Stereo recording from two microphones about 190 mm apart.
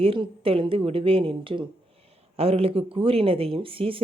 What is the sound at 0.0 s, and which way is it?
Speech, 30° right (ahead or behind).